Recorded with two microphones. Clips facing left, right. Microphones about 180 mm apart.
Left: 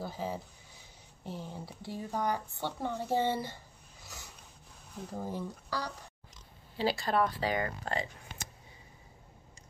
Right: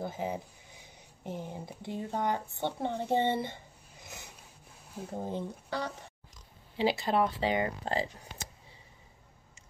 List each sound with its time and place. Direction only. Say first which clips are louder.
0.0 s speech: right 2 dB; 20° right (ahead or behind)
4.0 s a sound: right 2 dB; 20° right (ahead or behind)
5.1 s speech: right 2 dB; 20° right (ahead or behind)